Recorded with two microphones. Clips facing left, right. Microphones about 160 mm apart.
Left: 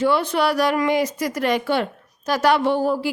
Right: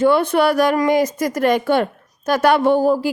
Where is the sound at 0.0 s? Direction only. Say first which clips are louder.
Right 5 dB; 50° right (ahead or behind).